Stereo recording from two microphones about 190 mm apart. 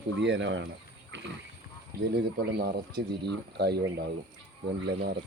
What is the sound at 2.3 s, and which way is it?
Speech, 55° right (ahead or behind).